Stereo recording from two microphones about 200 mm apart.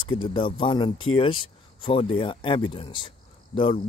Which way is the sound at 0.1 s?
25° left (ahead or behind).